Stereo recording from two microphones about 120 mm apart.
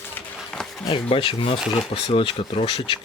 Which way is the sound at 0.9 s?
45° left (ahead or behind).